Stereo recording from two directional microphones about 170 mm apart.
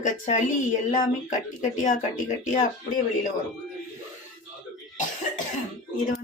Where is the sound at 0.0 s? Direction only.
45° left (ahead or behind).